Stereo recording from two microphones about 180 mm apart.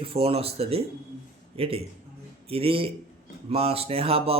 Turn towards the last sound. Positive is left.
turn(degrees=-30)  # may be behind; listen again after turning